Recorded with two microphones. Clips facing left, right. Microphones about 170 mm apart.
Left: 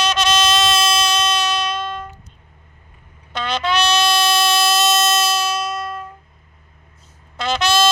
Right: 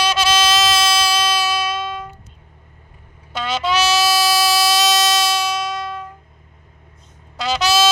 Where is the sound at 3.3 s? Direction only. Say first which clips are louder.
Right 1 dB; 5° right (ahead or behind).